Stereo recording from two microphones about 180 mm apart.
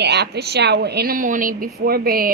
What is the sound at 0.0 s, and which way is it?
A woman's voice, 65° right (ahead or behind).